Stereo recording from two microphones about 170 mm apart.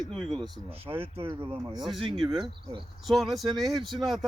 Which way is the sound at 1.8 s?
Centre (ahead or behind).